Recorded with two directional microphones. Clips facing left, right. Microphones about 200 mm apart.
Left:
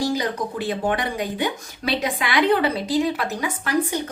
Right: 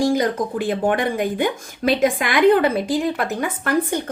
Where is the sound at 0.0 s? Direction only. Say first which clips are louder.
Right 5 dB; 50° right (ahead or behind).